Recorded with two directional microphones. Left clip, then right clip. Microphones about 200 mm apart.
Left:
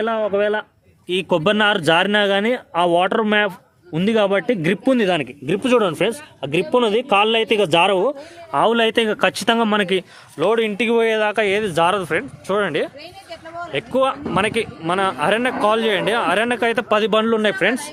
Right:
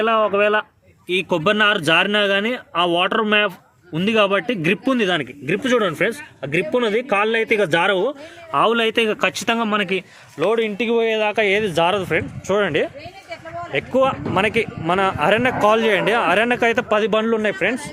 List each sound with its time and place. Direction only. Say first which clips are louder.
0.0 s speech: right 2 dB; 10° right (ahead or behind)
1.0 s a man's voice: left 1 dB; 5° left (ahead or behind)
16.9 s a man's voice: left 1 dB; 10° left (ahead or behind)